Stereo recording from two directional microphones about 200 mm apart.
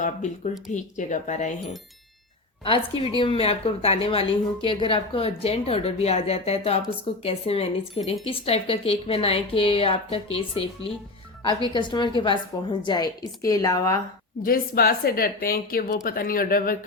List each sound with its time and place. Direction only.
0.0 s speech: 40° left (ahead or behind)
2.6 s a woman's voice: 25° left (ahead or behind)
11.7 s a woman's voice: 20° left (ahead or behind)
14.4 s speech: 45° left (ahead or behind)